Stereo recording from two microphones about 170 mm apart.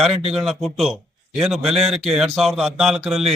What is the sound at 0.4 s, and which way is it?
A man's voice, centre (ahead or behind).